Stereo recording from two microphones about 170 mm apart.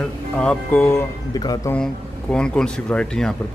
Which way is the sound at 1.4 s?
25° left (ahead or behind).